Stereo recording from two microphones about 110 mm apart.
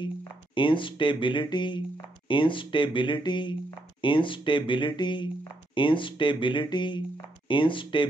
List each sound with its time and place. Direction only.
0.6 s speech: 50° left (ahead or behind)